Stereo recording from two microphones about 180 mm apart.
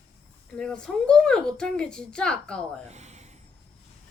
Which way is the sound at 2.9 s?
40° right (ahead or behind).